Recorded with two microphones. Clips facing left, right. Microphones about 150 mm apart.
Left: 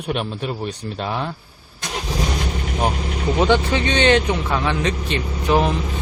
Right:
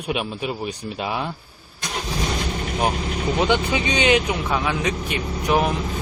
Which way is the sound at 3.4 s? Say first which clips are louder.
Left 4 dB; 15° right (ahead or behind).